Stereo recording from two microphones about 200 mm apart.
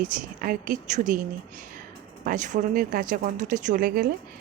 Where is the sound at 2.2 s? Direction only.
40° right (ahead or behind).